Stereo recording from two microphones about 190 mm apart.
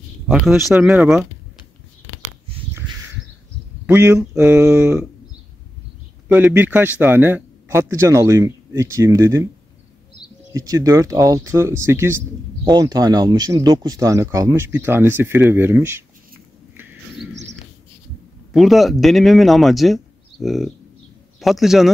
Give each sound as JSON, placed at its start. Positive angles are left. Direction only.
{"t": 0.3, "sound": "speech", "side_deg": -5}
{"t": 3.8, "sound": "a man's voice", "side_deg": -10}
{"t": 6.2, "sound": "speech", "side_deg": -10}
{"t": 10.5, "sound": "speech", "side_deg": -20}
{"t": 16.7, "sound": "a sound", "side_deg": -10}
{"t": 17.3, "sound": "bird", "side_deg": -70}
{"t": 18.5, "sound": "speech", "side_deg": 0}